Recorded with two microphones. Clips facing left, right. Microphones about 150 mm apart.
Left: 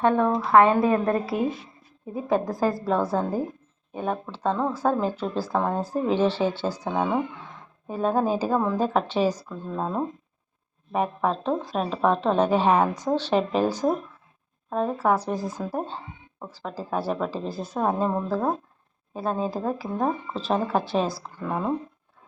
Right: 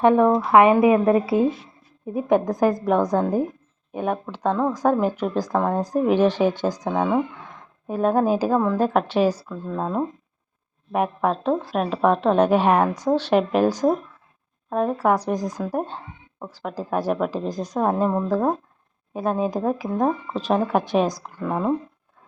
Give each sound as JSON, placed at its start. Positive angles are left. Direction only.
{"t": 0.0, "sound": "speech", "side_deg": -15}
{"t": 0.9, "sound": "speech", "side_deg": -5}
{"t": 2.3, "sound": "speech", "side_deg": -20}
{"t": 5.5, "sound": "speech", "side_deg": 5}
{"t": 5.8, "sound": "speech", "side_deg": -15}
{"t": 6.9, "sound": "speech", "side_deg": 5}
{"t": 7.9, "sound": "speech", "side_deg": -10}
{"t": 9.5, "sound": "speech", "side_deg": 5}
{"t": 10.9, "sound": "speech", "side_deg": -10}
{"t": 17.7, "sound": "speech", "side_deg": 5}
{"t": 18.3, "sound": "speech", "side_deg": -15}